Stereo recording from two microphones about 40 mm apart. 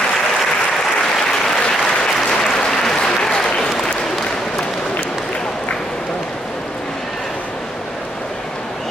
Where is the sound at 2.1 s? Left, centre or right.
Centre.